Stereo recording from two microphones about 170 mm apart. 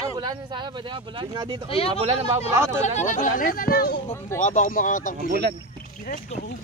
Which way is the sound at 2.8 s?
45° left (ahead or behind).